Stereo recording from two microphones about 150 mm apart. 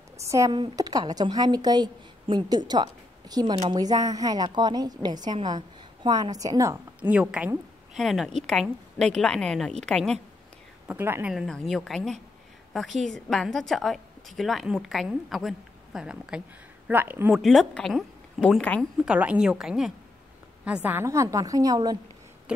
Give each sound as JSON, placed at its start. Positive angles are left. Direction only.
{"t": 0.2, "sound": "a woman's voice", "side_deg": -20}
{"t": 0.5, "sound": "a woman's voice", "side_deg": -30}
{"t": 7.0, "sound": "a woman's voice", "side_deg": -10}
{"t": 10.9, "sound": "a woman's voice", "side_deg": -15}
{"t": 11.3, "sound": "a woman's voice", "side_deg": 0}
{"t": 17.3, "sound": "a woman's voice", "side_deg": 0}
{"t": 19.0, "sound": "a woman's voice", "side_deg": -5}